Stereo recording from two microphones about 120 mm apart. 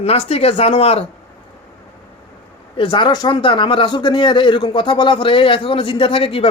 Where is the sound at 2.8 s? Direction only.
40° left (ahead or behind).